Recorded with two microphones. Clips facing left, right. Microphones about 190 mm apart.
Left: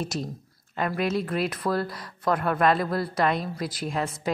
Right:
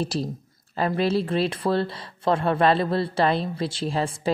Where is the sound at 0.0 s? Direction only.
30° right (ahead or behind).